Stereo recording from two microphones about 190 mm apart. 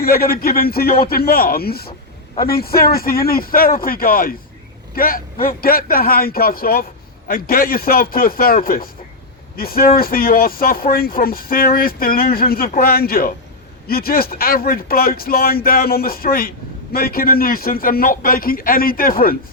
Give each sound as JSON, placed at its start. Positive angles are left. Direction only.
{"t": 0.0, "sound": "speech", "side_deg": 50}